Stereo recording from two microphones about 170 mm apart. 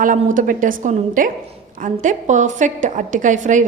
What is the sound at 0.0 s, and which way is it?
A woman's voice, 50° right (ahead or behind).